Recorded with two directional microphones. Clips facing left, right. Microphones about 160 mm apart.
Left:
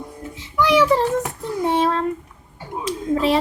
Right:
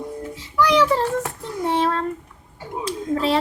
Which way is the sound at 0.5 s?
15° left (ahead or behind).